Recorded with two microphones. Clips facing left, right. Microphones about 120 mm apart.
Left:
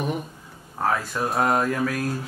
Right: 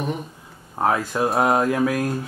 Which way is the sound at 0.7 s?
20° right (ahead or behind).